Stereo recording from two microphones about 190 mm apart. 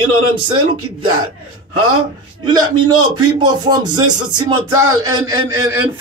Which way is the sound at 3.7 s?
20° right (ahead or behind).